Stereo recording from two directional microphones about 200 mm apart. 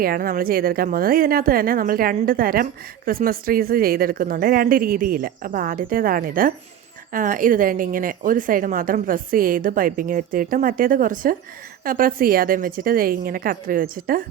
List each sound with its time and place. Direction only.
0.0 s speech: 45° right (ahead or behind)